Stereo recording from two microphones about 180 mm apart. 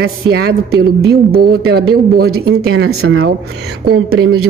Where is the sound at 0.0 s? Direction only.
60° right (ahead or behind).